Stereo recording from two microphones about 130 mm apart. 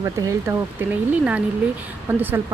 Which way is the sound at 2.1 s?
15° right (ahead or behind).